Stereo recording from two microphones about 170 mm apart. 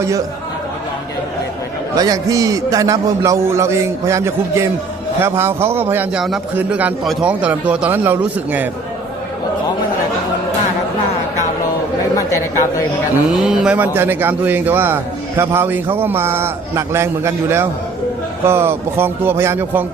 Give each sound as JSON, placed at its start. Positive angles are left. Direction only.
{"t": 2.0, "sound": "a man's voice", "side_deg": -20}
{"t": 13.3, "sound": "a man's voice", "side_deg": -5}